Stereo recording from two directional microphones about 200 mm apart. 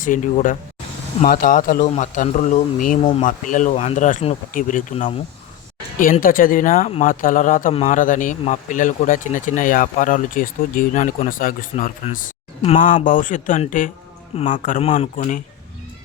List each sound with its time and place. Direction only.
0.0 s speech: 40° left (ahead or behind)
3.0 s speech: 25° left (ahead or behind)
3.2 s speech: 40° left (ahead or behind)
7.7 s speech: 30° left (ahead or behind)
7.9 s speech: 40° left (ahead or behind)
14.3 s speech: 25° left (ahead or behind)